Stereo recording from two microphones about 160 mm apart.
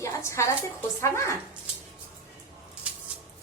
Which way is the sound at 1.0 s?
15° left (ahead or behind).